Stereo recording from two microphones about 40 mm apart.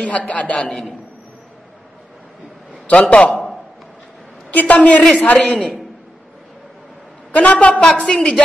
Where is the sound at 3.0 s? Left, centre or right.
Left.